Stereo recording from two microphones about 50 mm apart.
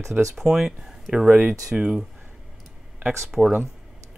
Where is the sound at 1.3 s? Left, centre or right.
Right.